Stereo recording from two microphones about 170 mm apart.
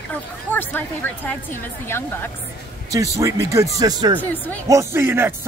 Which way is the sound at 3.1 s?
15° right (ahead or behind).